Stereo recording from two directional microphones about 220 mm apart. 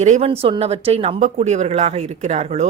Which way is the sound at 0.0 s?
30° right (ahead or behind).